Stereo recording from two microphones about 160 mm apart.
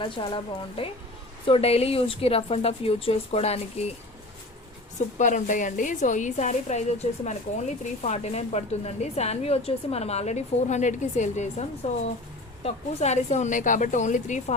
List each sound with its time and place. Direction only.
0.0 s a woman's voice: 30° left (ahead or behind)
1.5 s a woman's voice: 40° left (ahead or behind)
4.9 s a woman's voice: 50° left (ahead or behind)